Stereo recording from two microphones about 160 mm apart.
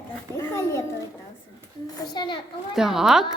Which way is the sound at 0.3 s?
15° left (ahead or behind).